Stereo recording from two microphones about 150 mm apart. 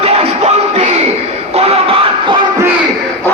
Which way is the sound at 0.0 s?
45° right (ahead or behind).